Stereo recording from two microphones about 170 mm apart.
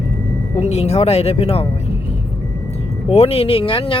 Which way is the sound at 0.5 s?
40° left (ahead or behind).